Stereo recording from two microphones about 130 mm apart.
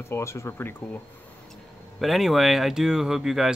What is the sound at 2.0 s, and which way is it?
Speech, centre (ahead or behind).